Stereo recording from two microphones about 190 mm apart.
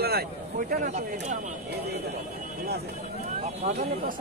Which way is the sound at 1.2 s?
40° right (ahead or behind).